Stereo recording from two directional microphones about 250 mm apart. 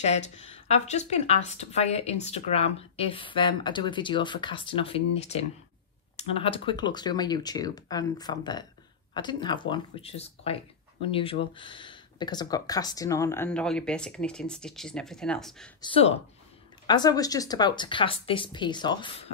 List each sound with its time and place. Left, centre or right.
0.0 s speech: left; by 15.7 s centre
15.8 s speech: left